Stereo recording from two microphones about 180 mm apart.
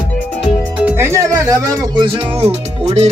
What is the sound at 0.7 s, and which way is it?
Speech, 10° right (ahead or behind).